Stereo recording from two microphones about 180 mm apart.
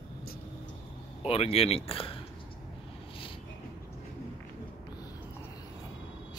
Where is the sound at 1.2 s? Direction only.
35° left (ahead or behind).